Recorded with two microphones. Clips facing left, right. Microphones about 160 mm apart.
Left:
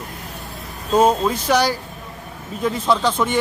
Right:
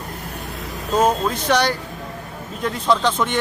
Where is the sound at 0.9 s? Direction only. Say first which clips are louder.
Left 2 dB; 10° left (ahead or behind).